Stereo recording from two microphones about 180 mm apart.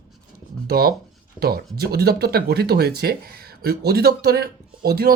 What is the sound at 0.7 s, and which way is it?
Speech, 60° right (ahead or behind).